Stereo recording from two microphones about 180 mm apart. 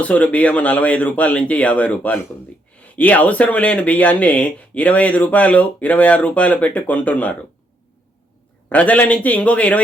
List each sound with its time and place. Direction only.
0.0 s speech: 10° left (ahead or behind)
8.7 s speech: 10° left (ahead or behind)